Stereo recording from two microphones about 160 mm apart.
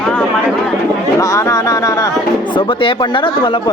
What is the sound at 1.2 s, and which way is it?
Speech, 20° left (ahead or behind).